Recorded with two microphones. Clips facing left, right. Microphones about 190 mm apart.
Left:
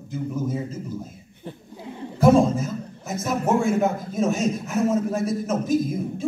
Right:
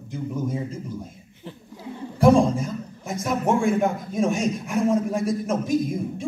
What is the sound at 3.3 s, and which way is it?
A man's voice, 5° left (ahead or behind).